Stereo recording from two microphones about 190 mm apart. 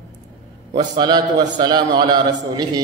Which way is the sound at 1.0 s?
20° right (ahead or behind).